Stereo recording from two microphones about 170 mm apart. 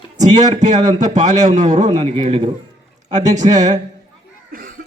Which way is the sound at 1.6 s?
45° right (ahead or behind).